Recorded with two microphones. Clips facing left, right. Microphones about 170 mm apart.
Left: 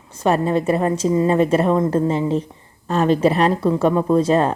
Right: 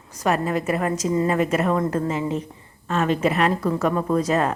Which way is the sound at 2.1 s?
30° left (ahead or behind).